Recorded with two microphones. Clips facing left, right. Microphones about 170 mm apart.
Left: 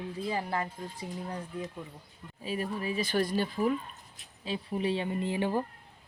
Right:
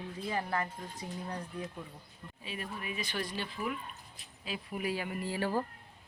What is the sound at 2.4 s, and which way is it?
Speech, 40° left (ahead or behind).